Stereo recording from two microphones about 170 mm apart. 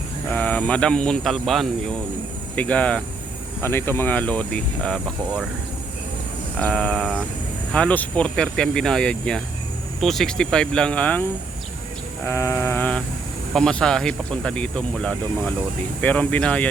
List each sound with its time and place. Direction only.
0.3 s speech: 10° left (ahead or behind)
6.6 s speech: 5° left (ahead or behind)